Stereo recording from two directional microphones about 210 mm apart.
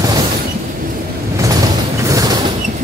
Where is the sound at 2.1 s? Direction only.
15° right (ahead or behind).